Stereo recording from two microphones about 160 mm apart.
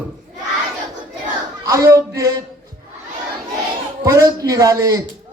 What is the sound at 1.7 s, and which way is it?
Speech, 20° right (ahead or behind).